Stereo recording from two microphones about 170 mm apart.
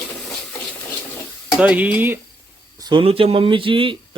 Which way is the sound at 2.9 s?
30° right (ahead or behind).